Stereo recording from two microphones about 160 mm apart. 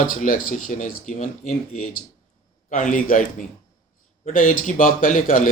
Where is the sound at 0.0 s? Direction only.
60° left (ahead or behind).